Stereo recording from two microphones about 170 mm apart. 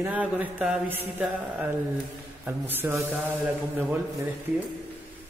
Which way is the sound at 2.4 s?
10° right (ahead or behind).